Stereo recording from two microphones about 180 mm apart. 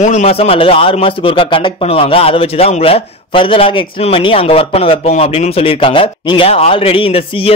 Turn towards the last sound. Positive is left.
turn(degrees=35)  # may be behind; listen again after turning